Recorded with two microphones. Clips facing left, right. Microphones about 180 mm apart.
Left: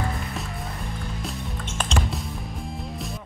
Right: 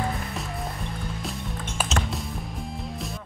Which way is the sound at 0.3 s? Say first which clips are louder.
Right 1 dB; centre (ahead or behind).